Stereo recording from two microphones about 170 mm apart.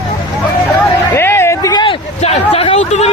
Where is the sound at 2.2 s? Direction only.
35° left (ahead or behind).